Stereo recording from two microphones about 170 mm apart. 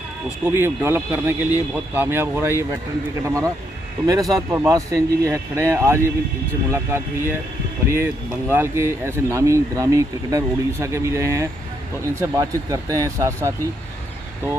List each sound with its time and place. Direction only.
0.5 s speech: 15° right (ahead or behind)
8.5 s speech: 15° right (ahead or behind)